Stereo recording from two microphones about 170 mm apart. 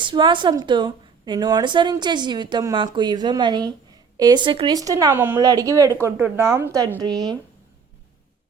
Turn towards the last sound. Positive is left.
turn(degrees=-25)  # may be behind; listen again after turning